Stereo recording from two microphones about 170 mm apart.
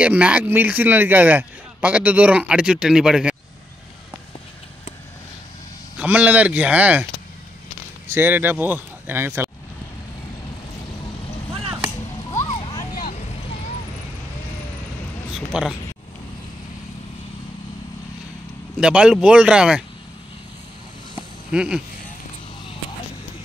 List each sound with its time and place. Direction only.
0.0 s a man's voice: 10° right (ahead or behind)
5.9 s a man's voice: 10° right (ahead or behind)
8.1 s speech: 10° right (ahead or behind)
12.3 s a sound: 25° left (ahead or behind)
15.3 s a sound: centre (ahead or behind)
18.8 s speech: 5° right (ahead or behind)
21.5 s speech: 5° right (ahead or behind)